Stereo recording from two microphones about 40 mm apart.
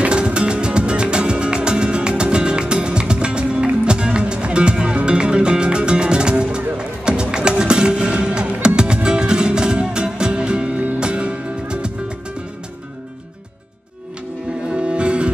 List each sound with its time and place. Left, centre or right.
0.1 s music: right
14.7 s music: right